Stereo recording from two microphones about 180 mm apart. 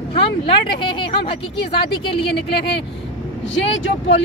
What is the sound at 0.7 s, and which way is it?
Speech, 25° left (ahead or behind).